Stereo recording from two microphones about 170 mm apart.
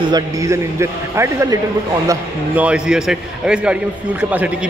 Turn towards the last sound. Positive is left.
turn(degrees=-10)  # may be behind; listen again after turning